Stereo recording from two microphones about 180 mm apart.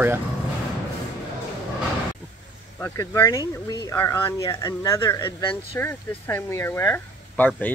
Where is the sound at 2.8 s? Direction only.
15° left (ahead or behind).